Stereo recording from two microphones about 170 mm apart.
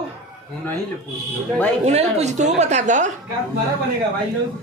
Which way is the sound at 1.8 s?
40° right (ahead or behind).